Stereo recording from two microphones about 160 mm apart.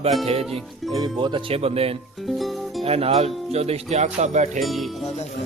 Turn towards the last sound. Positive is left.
turn(degrees=0)  # may be behind; listen again after turning